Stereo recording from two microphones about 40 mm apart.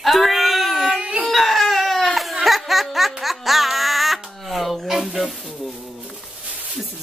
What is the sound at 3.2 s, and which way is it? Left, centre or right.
Music, centre.